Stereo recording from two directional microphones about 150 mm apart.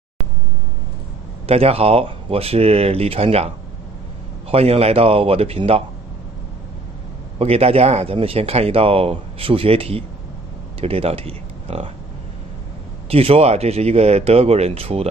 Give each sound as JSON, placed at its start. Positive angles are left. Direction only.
{"t": 1.5, "sound": "speech", "side_deg": -40}
{"t": 4.5, "sound": "speech", "side_deg": -45}
{"t": 7.3, "sound": "speech", "side_deg": -40}
{"t": 13.1, "sound": "speech", "side_deg": -40}